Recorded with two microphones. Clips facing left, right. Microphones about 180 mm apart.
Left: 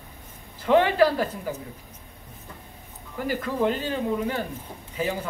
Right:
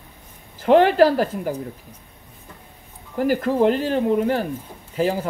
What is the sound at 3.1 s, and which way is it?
Speech, 45° right (ahead or behind).